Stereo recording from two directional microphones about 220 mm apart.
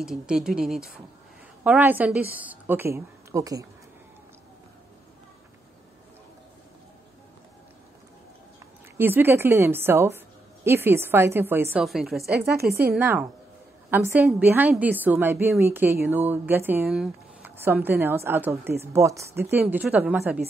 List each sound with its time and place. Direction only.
0.0 s a woman's voice: centre (ahead or behind)
8.9 s a woman's voice: 10° right (ahead or behind)
12.5 s speech: 45° right (ahead or behind)
12.9 s a woman's voice: 10° right (ahead or behind)